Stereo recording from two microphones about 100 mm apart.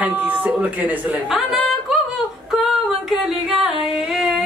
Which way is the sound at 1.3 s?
5° right (ahead or behind).